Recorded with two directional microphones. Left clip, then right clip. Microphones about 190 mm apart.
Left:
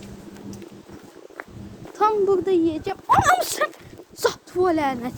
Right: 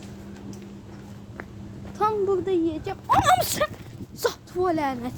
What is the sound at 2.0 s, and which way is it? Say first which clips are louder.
Speech: left 4 dB; 10° left (ahead or behind).